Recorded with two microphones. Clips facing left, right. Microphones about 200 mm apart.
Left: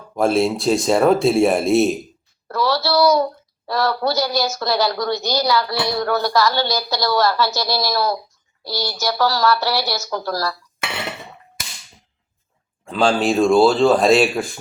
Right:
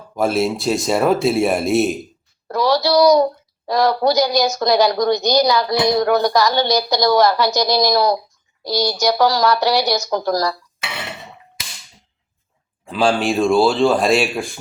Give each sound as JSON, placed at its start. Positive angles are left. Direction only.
{"t": 0.2, "sound": "a man's voice", "side_deg": 0}
{"t": 2.5, "sound": "a woman's voice", "side_deg": -15}
{"t": 12.8, "sound": "a man's voice", "side_deg": 0}